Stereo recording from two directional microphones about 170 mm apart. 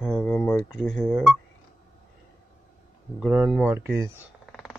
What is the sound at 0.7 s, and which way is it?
Speech, centre (ahead or behind).